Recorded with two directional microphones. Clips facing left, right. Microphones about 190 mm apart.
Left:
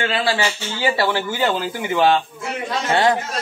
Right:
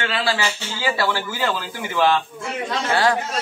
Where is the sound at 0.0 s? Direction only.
25° left (ahead or behind).